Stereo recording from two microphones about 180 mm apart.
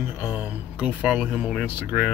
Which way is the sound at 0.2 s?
5° right (ahead or behind).